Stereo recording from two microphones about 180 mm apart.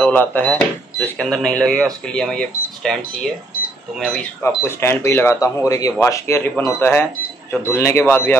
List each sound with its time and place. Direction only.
0.0 s speech: 10° left (ahead or behind)
4.5 s speech: 15° left (ahead or behind)